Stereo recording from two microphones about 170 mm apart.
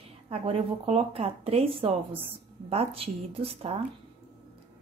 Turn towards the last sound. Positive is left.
turn(degrees=-35)  # may be behind; listen again after turning